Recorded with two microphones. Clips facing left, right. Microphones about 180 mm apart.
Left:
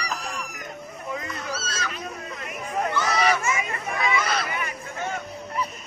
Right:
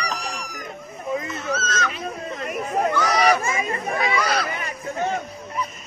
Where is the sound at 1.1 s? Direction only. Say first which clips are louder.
Right 6 dB; 25° right (ahead or behind).